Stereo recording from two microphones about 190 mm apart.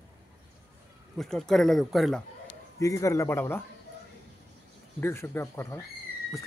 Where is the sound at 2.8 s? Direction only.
15° left (ahead or behind).